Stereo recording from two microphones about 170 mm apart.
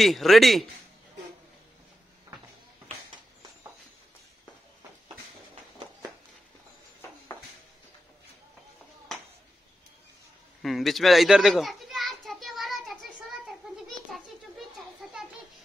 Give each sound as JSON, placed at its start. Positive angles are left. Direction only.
{"t": 0.0, "sound": "a man's voice", "side_deg": 0}
{"t": 10.6, "sound": "children playing", "side_deg": 0}
{"t": 14.1, "sound": "a sound", "side_deg": 0}